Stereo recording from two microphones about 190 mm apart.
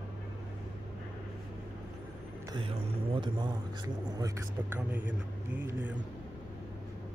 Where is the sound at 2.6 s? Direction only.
25° right (ahead or behind).